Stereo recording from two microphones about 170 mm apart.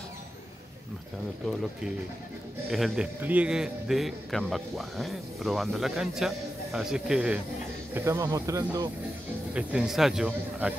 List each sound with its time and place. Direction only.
1.4 s speech: centre (ahead or behind)
7.9 s speech: 15° right (ahead or behind)
9.5 s speech: 5° right (ahead or behind)